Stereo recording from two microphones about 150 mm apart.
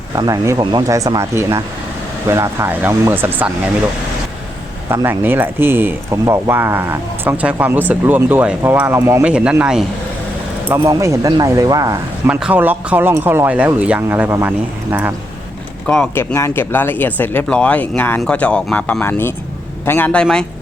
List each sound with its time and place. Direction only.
0.2 s speech: 25° right (ahead or behind)
4.9 s speech: 15° right (ahead or behind)
10.8 s speech: 20° right (ahead or behind)
12.3 s speech: 10° right (ahead or behind)
16.1 s a man's voice: 15° left (ahead or behind)